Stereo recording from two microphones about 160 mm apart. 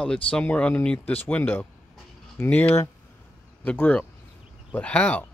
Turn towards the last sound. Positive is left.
turn(degrees=10)  # may be behind; listen again after turning